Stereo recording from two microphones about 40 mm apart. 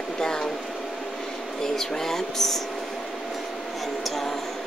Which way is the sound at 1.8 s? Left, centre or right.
Centre.